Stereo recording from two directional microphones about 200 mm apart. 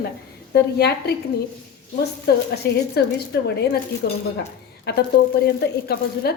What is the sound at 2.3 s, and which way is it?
A woman's voice, 55° left (ahead or behind).